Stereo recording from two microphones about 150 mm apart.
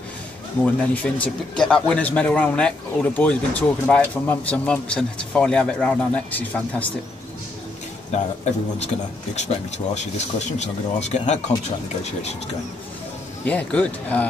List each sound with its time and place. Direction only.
1.0 s speech: 10° left (ahead or behind)
8.1 s speech: 45° left (ahead or behind)
13.5 s speech: 10° left (ahead or behind)